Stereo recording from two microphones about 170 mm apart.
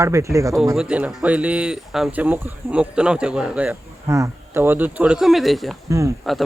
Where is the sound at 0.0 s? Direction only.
15° right (ahead or behind).